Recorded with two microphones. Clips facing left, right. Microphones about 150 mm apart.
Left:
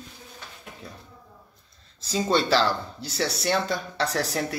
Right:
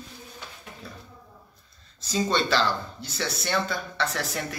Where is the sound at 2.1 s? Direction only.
30° left (ahead or behind).